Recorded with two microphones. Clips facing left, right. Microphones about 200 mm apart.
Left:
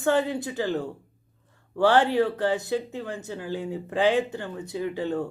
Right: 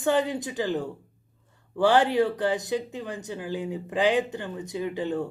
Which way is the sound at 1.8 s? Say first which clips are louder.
Even; 15° right (ahead or behind).